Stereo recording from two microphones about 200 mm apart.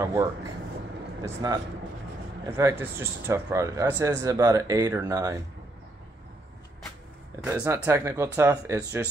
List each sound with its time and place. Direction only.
1.2 s speech: 20° right (ahead or behind)
7.4 s speech: 10° right (ahead or behind)